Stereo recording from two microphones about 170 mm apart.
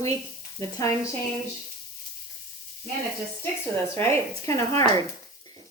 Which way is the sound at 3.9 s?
15° left (ahead or behind).